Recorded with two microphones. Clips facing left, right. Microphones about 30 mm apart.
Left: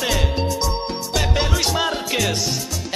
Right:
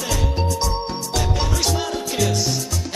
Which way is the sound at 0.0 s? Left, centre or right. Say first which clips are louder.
Left 2 dB; left.